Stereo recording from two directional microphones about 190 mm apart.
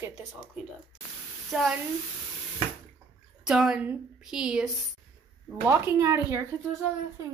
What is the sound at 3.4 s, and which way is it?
A woman's voice, 5° right (ahead or behind).